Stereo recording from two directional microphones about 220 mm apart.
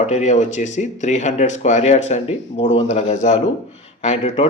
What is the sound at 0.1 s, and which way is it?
Speech, 35° left (ahead or behind).